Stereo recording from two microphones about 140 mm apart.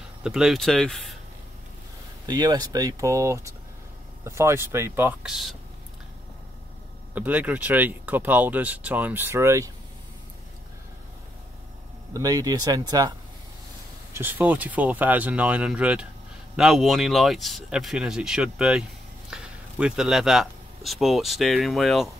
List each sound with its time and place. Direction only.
0.2 s speech: 5° right (ahead or behind)
2.2 s speech: 30° right (ahead or behind)
5.2 s speech: centre (ahead or behind)
7.2 s speech: 10° right (ahead or behind)
12.1 s speech: 25° right (ahead or behind)
14.1 s speech: 15° right (ahead or behind)